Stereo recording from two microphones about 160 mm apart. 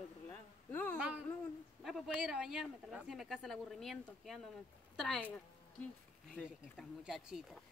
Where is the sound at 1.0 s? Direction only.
10° right (ahead or behind).